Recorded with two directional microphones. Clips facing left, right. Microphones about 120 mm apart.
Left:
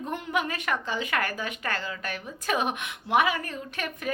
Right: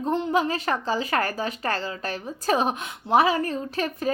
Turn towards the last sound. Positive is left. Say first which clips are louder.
# right 6 dB
turn(degrees=-30)  # may be behind; listen again after turning